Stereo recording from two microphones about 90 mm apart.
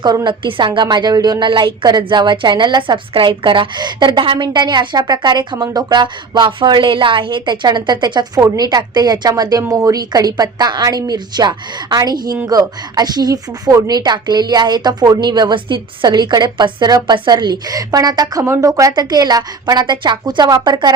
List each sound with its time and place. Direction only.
0.3 s a woman's voice: 65° right (ahead or behind)
3.1 s a woman's voice: 70° right (ahead or behind)
4.4 s speech: 55° right (ahead or behind)
16.0 s speech: 50° right (ahead or behind)
18.4 s speech: 35° right (ahead or behind); by 20.9 s 50° right (ahead or behind)